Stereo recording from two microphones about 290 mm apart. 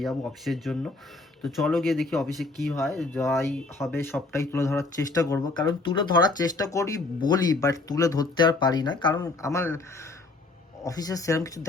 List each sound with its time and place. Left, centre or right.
0.0 s speech: centre